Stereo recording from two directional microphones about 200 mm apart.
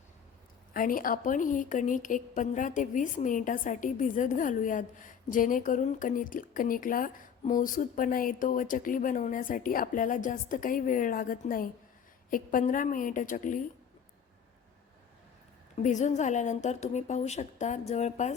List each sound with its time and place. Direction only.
0.7 s a woman's voice: 45° left (ahead or behind)
15.8 s a woman's voice: 35° left (ahead or behind)